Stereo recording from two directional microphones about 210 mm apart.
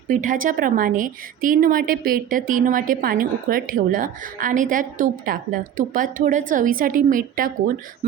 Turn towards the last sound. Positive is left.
turn(degrees=-40)  # may be behind; listen again after turning